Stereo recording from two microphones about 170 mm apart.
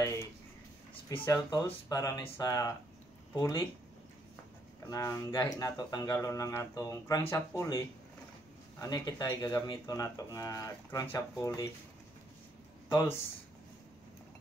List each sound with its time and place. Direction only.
0.0 s a sound: 15° left (ahead or behind)
1.0 s speech: 15° left (ahead or behind)
4.8 s speech: 20° left (ahead or behind)